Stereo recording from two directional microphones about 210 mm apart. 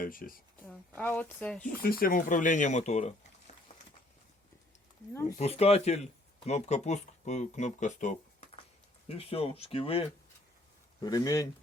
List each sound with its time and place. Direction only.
0.0 s speech: 40° left (ahead or behind)
0.6 s a woman's voice: 5° left (ahead or behind)
1.6 s speech: 45° left (ahead or behind)
5.4 s speech: 30° left (ahead or behind)
11.0 s a woman's voice: 15° left (ahead or behind)